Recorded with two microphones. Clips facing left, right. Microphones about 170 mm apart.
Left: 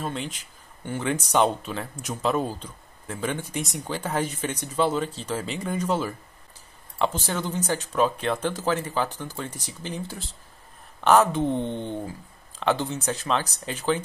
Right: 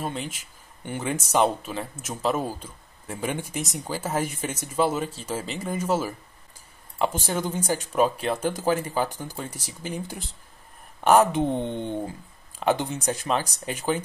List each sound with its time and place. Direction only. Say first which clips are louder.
0.0 s a man's voice: even; 5° right (ahead or behind)